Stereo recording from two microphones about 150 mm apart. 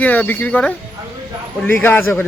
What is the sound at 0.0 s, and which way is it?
A man's voice, 10° left (ahead or behind).